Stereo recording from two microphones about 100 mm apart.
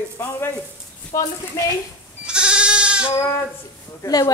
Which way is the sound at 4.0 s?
40° left (ahead or behind).